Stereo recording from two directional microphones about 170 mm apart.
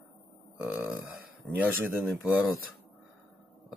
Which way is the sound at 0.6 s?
10° right (ahead or behind).